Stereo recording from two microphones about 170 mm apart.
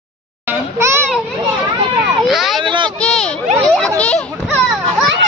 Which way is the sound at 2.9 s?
5° left (ahead or behind).